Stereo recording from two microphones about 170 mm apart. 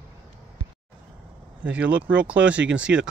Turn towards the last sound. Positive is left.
turn(degrees=-5)  # may be behind; listen again after turning